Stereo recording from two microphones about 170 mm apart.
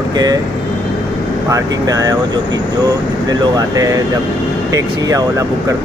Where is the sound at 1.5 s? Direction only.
20° right (ahead or behind).